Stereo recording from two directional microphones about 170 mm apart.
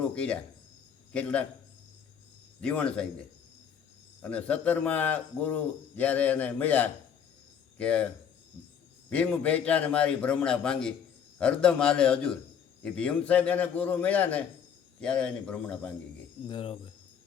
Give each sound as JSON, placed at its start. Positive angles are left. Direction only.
{"t": 0.0, "sound": "a man's voice", "side_deg": 5}
{"t": 2.6, "sound": "a man's voice", "side_deg": 5}
{"t": 4.2, "sound": "a man's voice", "side_deg": 10}
{"t": 16.5, "sound": "speech", "side_deg": 35}